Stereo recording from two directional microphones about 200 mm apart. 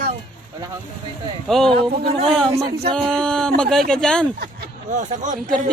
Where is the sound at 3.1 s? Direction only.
5° left (ahead or behind).